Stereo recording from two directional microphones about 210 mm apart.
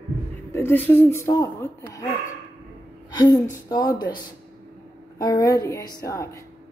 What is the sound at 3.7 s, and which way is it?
Speech, 20° left (ahead or behind).